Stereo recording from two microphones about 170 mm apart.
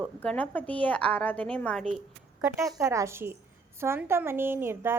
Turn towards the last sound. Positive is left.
turn(degrees=-15)  # may be behind; listen again after turning